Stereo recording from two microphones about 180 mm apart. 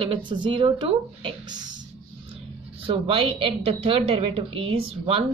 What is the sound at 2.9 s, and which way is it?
A woman's voice, 30° right (ahead or behind).